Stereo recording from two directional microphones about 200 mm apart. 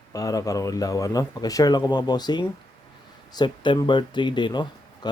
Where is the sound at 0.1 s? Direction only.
15° left (ahead or behind).